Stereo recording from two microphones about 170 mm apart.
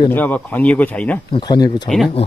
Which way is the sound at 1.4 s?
25° left (ahead or behind).